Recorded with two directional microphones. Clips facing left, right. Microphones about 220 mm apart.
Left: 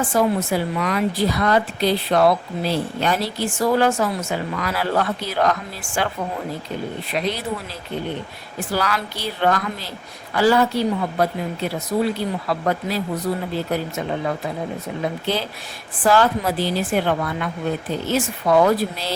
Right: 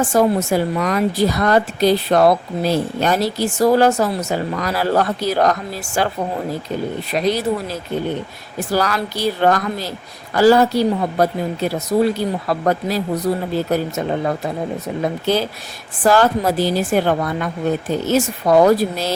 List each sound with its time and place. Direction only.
0.0 s a woman's voice: 45° right (ahead or behind)
7.1 s a woman's voice: 40° right (ahead or behind)